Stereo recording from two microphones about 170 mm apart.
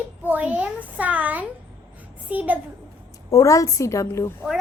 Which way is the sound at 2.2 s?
10° right (ahead or behind).